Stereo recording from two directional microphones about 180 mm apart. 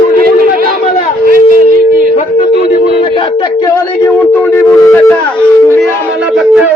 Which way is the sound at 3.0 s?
25° left (ahead or behind).